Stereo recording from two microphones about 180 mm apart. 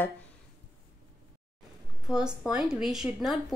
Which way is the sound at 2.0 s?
5° right (ahead or behind).